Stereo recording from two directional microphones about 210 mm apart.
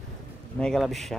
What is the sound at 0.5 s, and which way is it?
Speech, centre (ahead or behind).